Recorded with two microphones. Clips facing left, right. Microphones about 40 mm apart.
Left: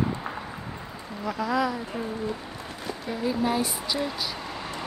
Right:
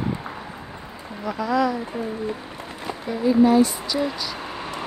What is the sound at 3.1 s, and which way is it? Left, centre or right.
Speech, centre.